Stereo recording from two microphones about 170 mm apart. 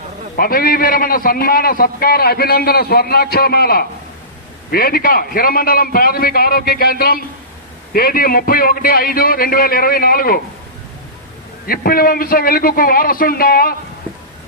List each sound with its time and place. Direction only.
0.3 s a man's voice: 60° left (ahead or behind)
11.6 s a man's voice: 60° left (ahead or behind)